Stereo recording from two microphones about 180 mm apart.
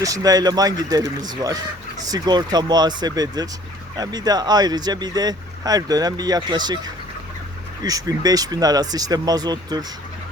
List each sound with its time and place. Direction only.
0.0 s speech: 20° right (ahead or behind)